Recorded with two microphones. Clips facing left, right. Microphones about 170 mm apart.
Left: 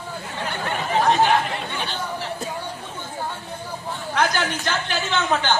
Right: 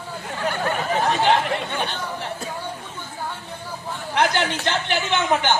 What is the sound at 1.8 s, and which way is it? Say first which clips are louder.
Chatter: right 1 dB; 55° right (ahead or behind).